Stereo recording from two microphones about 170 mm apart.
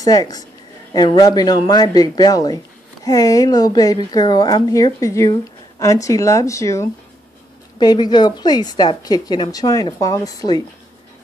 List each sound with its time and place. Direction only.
0.0 s speech: 20° left (ahead or behind)